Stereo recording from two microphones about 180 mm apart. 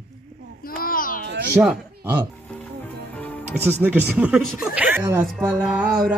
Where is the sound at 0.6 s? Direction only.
50° left (ahead or behind).